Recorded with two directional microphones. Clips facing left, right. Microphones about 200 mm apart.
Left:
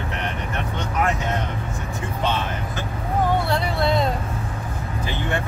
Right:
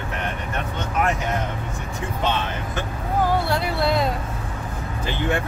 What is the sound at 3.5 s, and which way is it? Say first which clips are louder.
Music: even; 5° right (ahead or behind).